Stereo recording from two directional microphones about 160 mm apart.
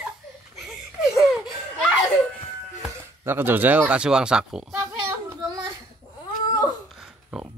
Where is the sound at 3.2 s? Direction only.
15° right (ahead or behind).